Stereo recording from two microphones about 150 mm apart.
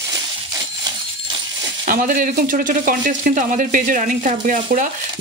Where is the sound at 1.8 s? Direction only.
60° right (ahead or behind).